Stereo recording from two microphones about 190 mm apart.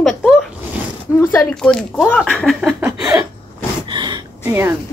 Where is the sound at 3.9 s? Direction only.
25° right (ahead or behind).